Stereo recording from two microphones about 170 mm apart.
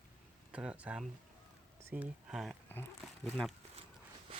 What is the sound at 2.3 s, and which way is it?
Speech, centre (ahead or behind).